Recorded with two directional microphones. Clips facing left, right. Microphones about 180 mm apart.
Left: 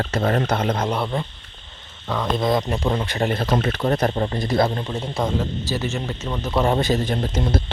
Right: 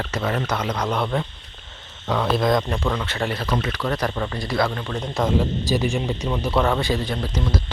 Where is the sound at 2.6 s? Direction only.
20° left (ahead or behind).